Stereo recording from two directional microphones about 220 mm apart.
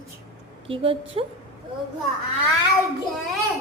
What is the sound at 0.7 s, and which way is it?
Speech, 25° right (ahead or behind).